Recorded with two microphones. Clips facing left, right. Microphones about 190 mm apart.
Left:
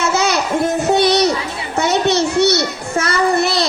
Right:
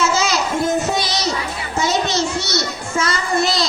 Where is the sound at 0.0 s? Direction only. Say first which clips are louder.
Left 2 dB; 60° left (ahead or behind).